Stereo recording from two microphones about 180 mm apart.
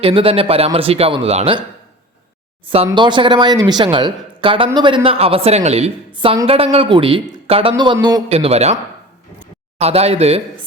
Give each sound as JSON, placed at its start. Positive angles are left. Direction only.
{"t": 0.0, "sound": "a man's voice", "side_deg": -30}
{"t": 2.6, "sound": "speech", "side_deg": -30}
{"t": 8.3, "sound": "a man's voice", "side_deg": -35}